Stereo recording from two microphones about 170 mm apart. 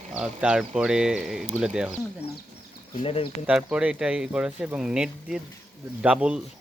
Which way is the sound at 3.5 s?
5° right (ahead or behind).